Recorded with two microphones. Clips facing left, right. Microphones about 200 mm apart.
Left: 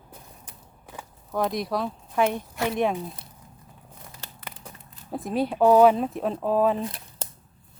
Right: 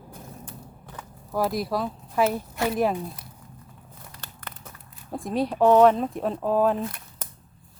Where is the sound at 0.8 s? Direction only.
10° left (ahead or behind).